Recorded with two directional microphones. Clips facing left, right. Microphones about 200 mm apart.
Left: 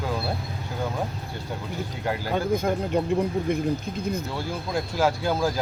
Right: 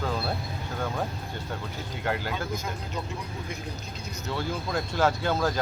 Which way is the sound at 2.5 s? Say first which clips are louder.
Left 10 dB; 55° left (ahead or behind).